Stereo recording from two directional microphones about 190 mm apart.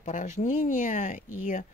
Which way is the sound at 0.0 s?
40° left (ahead or behind).